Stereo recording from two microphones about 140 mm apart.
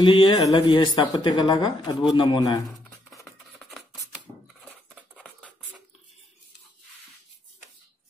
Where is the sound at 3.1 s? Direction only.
Centre (ahead or behind).